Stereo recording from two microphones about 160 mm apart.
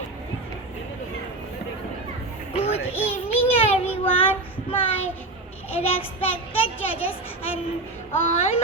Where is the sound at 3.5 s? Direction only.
35° left (ahead or behind).